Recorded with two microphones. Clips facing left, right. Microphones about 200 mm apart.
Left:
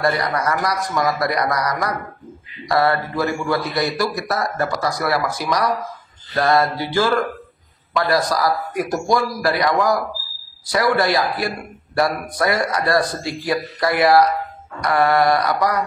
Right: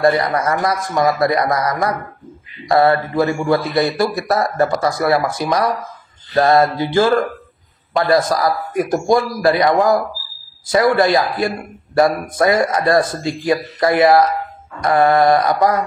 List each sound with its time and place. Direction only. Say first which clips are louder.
0.0 s a man's voice: right 5 dB; 25° right (ahead or behind)